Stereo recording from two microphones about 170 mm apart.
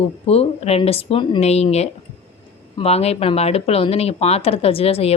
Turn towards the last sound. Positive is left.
turn(degrees=35)  # may be behind; listen again after turning